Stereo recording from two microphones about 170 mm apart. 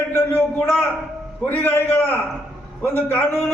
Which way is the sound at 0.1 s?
15° left (ahead or behind).